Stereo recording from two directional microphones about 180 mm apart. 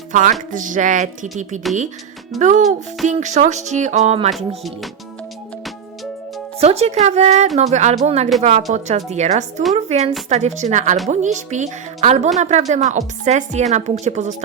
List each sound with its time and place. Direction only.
0.1 s speech: 45° right (ahead or behind)
0.5 s a sound: 45° right (ahead or behind)
2.4 s speech: 40° right (ahead or behind)
4.3 s speech: centre (ahead or behind)
6.6 s speech: 35° right (ahead or behind)